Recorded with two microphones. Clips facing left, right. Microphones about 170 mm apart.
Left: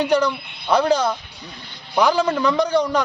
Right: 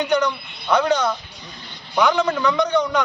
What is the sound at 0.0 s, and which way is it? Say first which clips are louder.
A man's voice: left 2 dB; 30° left (ahead or behind).